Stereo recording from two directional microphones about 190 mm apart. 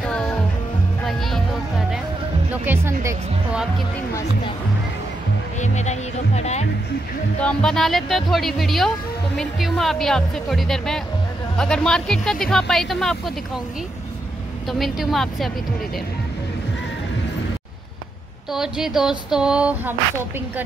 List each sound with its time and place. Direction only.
0.0 s music: 5° left (ahead or behind); by 3.2 s 15° right (ahead or behind)
5.6 s music: 35° left (ahead or behind)
7.4 s speech: 5° left (ahead or behind)
14.7 s speech: centre (ahead or behind)
18.5 s speech: centre (ahead or behind)